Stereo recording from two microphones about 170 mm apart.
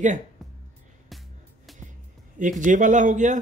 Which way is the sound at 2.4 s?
50° right (ahead or behind).